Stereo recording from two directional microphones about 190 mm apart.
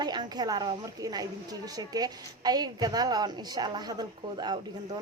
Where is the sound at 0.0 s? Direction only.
20° right (ahead or behind).